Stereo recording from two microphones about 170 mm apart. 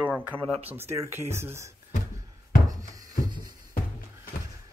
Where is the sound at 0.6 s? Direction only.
15° right (ahead or behind).